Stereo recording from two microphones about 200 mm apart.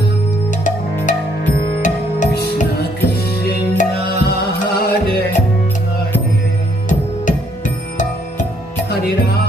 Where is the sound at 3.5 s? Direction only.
50° left (ahead or behind).